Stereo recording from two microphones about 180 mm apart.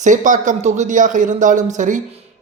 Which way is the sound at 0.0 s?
45° right (ahead or behind).